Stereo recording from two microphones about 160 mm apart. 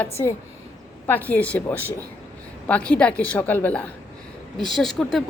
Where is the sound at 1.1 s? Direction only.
10° left (ahead or behind).